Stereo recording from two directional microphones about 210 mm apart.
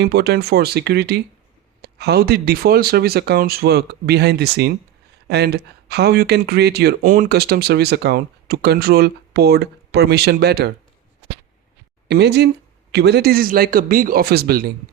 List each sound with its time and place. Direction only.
0.0 s speech: 50° right (ahead or behind)
7.0 s speech: 40° right (ahead or behind)
12.0 s speech: 50° right (ahead or behind)